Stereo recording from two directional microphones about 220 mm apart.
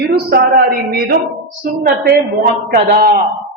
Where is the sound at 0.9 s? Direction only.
40° right (ahead or behind).